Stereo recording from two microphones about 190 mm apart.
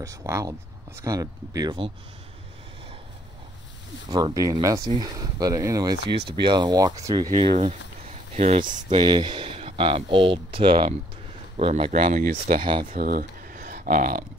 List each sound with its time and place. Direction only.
0.0 s speech: 15° right (ahead or behind)
4.1 s speech: 20° right (ahead or behind)
7.2 s speech: 35° right (ahead or behind)
9.0 s speech: 25° right (ahead or behind); by 12.6 s 45° right (ahead or behind)
12.9 s a sound: 50° right (ahead or behind)